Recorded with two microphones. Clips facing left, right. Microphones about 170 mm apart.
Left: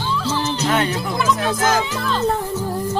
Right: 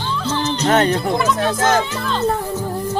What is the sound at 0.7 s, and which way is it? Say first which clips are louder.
Speech: right 6 dB; 40° right (ahead or behind).